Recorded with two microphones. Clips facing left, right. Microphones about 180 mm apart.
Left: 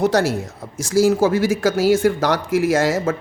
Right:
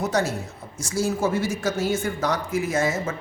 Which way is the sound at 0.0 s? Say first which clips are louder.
Left 7 dB; 90° left.